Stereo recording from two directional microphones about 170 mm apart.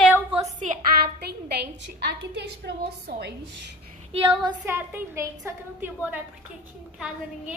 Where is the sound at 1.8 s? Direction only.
85° right.